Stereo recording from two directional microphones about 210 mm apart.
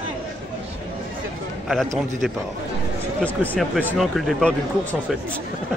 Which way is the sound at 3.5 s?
Centre (ahead or behind).